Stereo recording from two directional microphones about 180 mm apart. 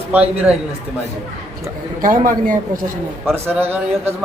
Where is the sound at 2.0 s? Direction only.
50° right (ahead or behind).